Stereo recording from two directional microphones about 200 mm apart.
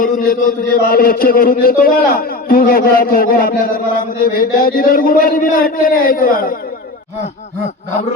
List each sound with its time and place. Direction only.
0.0 s a man's voice: 45° left (ahead or behind)